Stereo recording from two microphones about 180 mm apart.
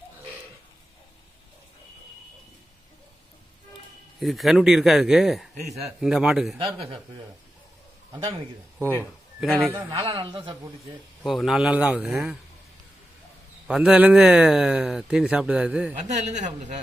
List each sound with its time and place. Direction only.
4.2 s a man's voice: centre (ahead or behind)
6.6 s a man's voice: 30° right (ahead or behind)
9.4 s a man's voice: centre (ahead or behind)
9.8 s a man's voice: 30° right (ahead or behind)
11.2 s a man's voice: centre (ahead or behind)
13.7 s a man's voice: 5° right (ahead or behind)
16.1 s speech: 40° right (ahead or behind)